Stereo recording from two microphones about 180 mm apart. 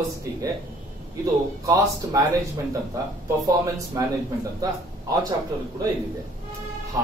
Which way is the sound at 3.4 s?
20° right (ahead or behind).